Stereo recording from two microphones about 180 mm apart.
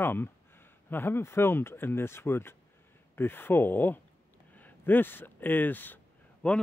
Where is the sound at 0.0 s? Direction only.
10° left (ahead or behind).